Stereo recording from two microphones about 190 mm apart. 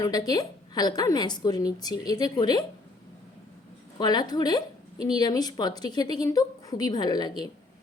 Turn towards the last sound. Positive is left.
turn(degrees=20)  # may be behind; listen again after turning